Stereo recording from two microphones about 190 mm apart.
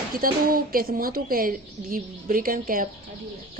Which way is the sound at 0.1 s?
50° right (ahead or behind).